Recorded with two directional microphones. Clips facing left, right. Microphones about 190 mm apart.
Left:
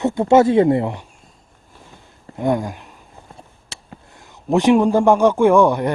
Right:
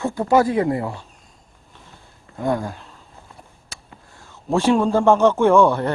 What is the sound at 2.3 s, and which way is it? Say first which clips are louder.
Speech: left 3 dB; 20° left (ahead or behind).